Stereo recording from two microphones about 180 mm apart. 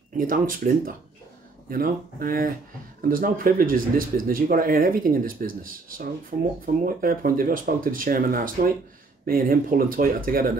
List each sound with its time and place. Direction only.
0.2 s speech: 50° right (ahead or behind)